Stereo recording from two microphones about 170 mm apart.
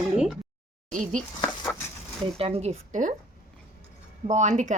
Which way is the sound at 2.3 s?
35° right (ahead or behind).